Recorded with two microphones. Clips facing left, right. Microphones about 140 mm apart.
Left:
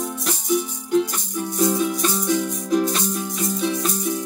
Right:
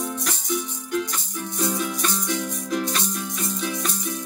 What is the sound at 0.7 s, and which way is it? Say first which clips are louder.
Music: left 6 dB; 15° left (ahead or behind).